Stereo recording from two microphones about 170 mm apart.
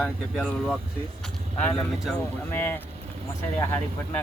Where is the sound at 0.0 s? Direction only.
5° left (ahead or behind).